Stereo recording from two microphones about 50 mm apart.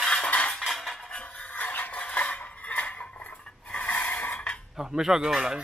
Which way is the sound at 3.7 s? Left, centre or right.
Left.